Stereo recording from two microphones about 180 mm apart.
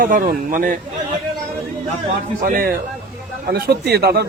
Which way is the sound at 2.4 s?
55° right (ahead or behind).